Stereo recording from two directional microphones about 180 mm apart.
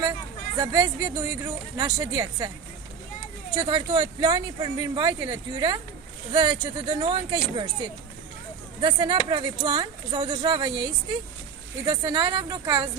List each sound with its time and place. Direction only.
0.6 s speech: 20° right (ahead or behind)
3.5 s speech: 25° right (ahead or behind)
8.8 s speech: 25° right (ahead or behind)